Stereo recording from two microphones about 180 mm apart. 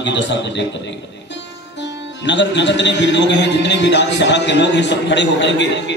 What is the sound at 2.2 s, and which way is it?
A man's voice, 80° left.